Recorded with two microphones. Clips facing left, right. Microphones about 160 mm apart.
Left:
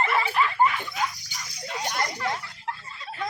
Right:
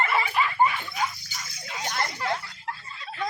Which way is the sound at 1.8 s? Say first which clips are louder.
Left 1 dB; 15° left (ahead or behind).